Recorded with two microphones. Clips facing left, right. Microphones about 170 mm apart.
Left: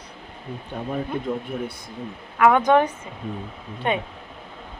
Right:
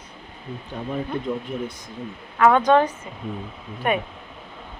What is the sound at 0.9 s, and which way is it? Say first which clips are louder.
A woman's voice: even; 5° left (ahead or behind).